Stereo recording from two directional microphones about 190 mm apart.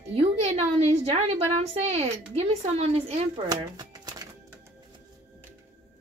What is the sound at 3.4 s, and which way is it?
Music, 20° right (ahead or behind).